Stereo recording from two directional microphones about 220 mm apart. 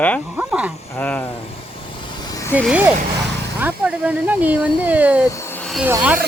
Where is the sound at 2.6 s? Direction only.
5° right (ahead or behind).